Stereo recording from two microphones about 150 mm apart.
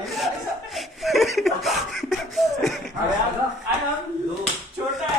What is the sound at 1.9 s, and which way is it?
Beatboxing, centre (ahead or behind).